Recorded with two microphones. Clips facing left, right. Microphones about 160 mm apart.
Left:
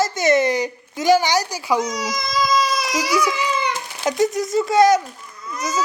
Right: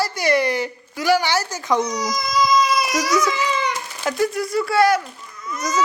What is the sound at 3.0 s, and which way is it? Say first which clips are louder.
Speech: left 2 dB; 10° left (ahead or behind).